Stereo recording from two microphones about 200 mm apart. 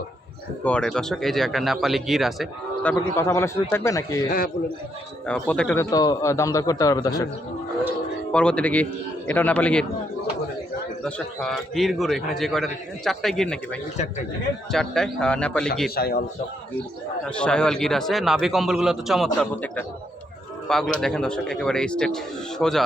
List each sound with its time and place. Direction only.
0.6 s a man's voice: 5° left (ahead or behind)
2.9 s a man's voice: 15° left (ahead or behind)
4.3 s a man's voice: 45° left (ahead or behind)
5.2 s a man's voice: 5° left (ahead or behind)
8.3 s a man's voice: 5° left (ahead or behind)
11.0 s a man's voice: centre (ahead or behind)
14.7 s a man's voice: centre (ahead or behind)
16.0 s a man's voice: 50° left (ahead or behind)
17.2 s a man's voice: 5° left (ahead or behind)